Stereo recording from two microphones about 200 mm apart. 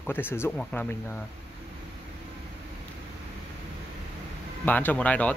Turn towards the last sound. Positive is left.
turn(degrees=5)  # may be behind; listen again after turning